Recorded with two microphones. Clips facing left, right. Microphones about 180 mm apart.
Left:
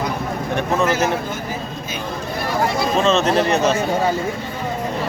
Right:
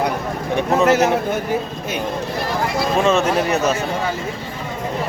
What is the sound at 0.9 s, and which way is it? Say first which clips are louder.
Speech: right 4 dB; 65° right (ahead or behind).